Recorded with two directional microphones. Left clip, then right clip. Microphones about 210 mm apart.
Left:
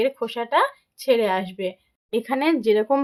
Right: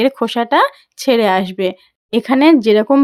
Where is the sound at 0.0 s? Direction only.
50° right (ahead or behind).